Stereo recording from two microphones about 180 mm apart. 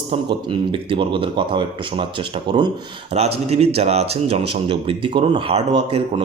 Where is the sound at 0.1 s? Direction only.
25° right (ahead or behind).